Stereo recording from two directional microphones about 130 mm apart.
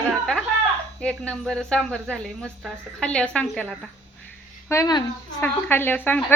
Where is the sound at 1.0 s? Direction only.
5° left (ahead or behind).